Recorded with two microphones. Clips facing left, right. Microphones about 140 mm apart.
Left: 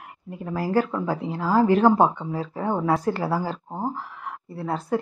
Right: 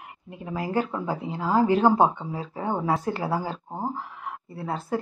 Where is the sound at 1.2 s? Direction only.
25° right (ahead or behind).